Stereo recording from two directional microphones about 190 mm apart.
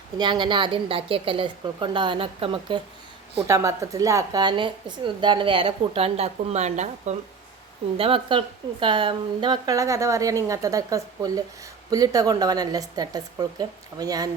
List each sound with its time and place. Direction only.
0.2 s a woman's voice: 25° right (ahead or behind)
3.4 s a woman's voice: 15° right (ahead or behind)